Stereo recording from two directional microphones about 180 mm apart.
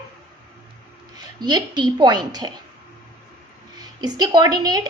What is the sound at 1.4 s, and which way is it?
A woman's voice, 25° right (ahead or behind).